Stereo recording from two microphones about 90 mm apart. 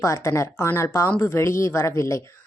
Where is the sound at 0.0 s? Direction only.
35° left (ahead or behind).